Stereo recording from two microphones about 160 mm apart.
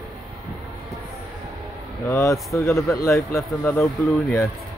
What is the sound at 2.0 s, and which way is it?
Speech, 20° left (ahead or behind).